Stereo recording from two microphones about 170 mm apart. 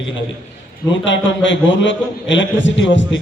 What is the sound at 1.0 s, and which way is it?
A man's voice, 90° left.